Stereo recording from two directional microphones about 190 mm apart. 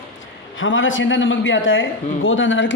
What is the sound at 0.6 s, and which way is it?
A man's voice, 90° left.